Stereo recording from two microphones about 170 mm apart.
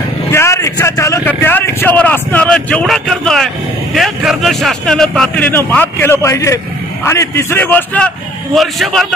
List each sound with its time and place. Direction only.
0.3 s a man's voice: 15° left (ahead or behind); by 9.0 s centre (ahead or behind)